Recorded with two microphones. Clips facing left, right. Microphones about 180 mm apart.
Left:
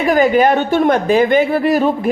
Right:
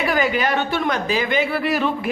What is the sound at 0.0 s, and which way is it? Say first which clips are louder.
A man's voice: left 8 dB; 45° left (ahead or behind).